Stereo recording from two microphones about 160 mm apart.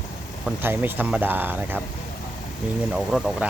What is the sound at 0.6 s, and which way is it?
Speech, 10° right (ahead or behind).